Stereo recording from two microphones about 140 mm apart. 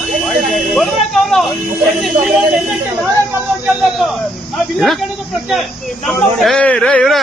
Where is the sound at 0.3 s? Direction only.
Centre (ahead or behind).